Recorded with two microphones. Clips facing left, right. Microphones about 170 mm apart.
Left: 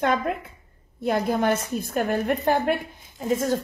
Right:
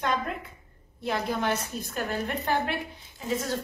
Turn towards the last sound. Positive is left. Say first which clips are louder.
# left 6 dB
turn(degrees=50)  # may be behind; listen again after turning